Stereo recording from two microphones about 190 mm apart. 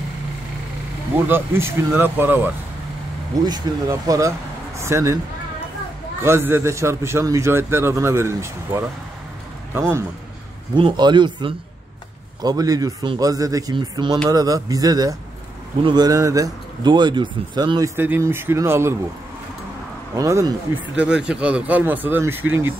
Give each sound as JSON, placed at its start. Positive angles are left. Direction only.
{"t": 1.2, "sound": "a man's voice", "side_deg": -10}
{"t": 3.4, "sound": "a man's voice", "side_deg": -20}
{"t": 6.2, "sound": "a man's voice", "side_deg": -10}
{"t": 10.7, "sound": "a man's voice", "side_deg": -25}
{"t": 20.2, "sound": "a man's voice", "side_deg": -15}
{"t": 20.9, "sound": "a man's voice", "side_deg": -5}